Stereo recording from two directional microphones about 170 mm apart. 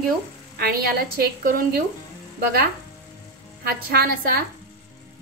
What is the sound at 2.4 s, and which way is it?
A woman's voice, 60° right (ahead or behind).